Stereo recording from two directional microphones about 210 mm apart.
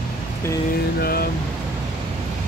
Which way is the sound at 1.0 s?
45° left (ahead or behind).